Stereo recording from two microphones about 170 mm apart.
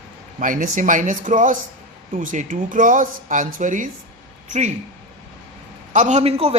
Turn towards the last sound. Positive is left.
turn(degrees=-35)  # may be behind; listen again after turning